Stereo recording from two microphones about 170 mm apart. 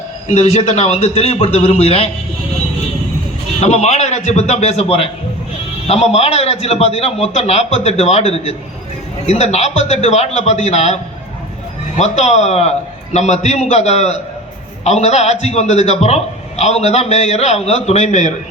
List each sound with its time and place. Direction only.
0.3 s a man's voice: 40° left (ahead or behind)
3.6 s a man's voice: 40° left (ahead or behind)